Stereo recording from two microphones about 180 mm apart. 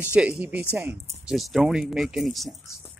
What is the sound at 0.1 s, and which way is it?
Speech, 5° right (ahead or behind).